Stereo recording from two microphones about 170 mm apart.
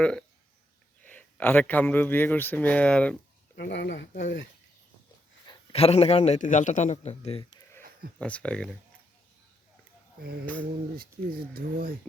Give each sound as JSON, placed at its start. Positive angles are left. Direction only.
{"t": 0.0, "sound": "speech", "side_deg": 5}
{"t": 3.5, "sound": "speech", "side_deg": 75}
{"t": 5.7, "sound": "a man's voice", "side_deg": 35}
{"t": 7.8, "sound": "a sound", "side_deg": -60}
{"t": 8.2, "sound": "speech", "side_deg": 5}
{"t": 10.9, "sound": "speech", "side_deg": -65}